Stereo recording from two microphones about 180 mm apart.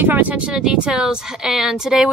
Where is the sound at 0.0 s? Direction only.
10° right (ahead or behind).